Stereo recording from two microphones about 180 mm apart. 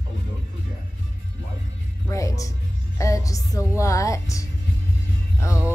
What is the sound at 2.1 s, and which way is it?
Speech, 15° left (ahead or behind).